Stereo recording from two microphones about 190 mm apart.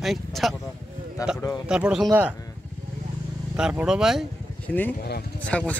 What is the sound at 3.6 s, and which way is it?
Speech, 5° right (ahead or behind).